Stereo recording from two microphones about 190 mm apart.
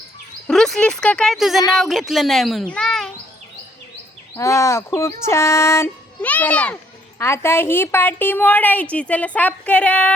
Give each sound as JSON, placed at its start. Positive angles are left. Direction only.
{"t": 0.4, "sound": "speech", "side_deg": 0}
{"t": 4.4, "sound": "a woman's voice", "side_deg": 15}